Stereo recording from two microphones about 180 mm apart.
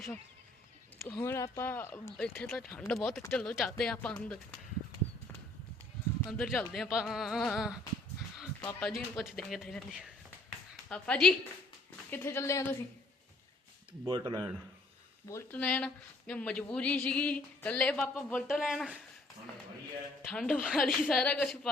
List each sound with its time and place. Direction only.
1.0 s speech: 10° left (ahead or behind)
2.1 s a woman's voice: 5° left (ahead or behind)
6.2 s a woman's voice: centre (ahead or behind)
14.0 s speech: 20° right (ahead or behind)
15.3 s speech: 15° left (ahead or behind)
18.4 s a woman's voice: centre (ahead or behind)
20.3 s a woman's voice: 5° left (ahead or behind)